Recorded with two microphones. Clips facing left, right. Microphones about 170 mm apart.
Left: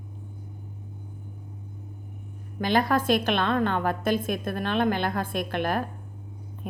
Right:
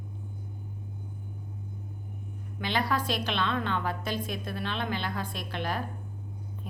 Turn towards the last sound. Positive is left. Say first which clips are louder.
# left 7 dB
turn(degrees=50)  # may be behind; listen again after turning